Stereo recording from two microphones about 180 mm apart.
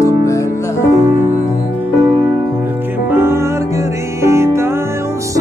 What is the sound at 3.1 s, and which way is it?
Music, 15° right (ahead or behind).